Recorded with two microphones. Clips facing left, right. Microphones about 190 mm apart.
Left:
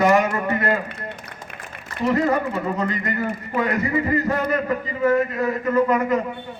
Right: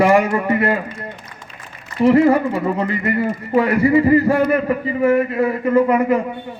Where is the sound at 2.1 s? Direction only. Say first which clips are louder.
Right 6 dB; 30° right (ahead or behind).